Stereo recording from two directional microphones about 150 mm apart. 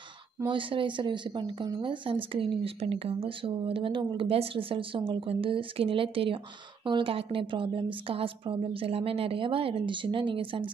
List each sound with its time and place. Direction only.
0.5 s speech: 35° right (ahead or behind)